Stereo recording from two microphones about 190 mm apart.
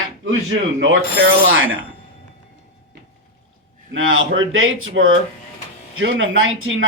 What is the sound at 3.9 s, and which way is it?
Speech, 90° right.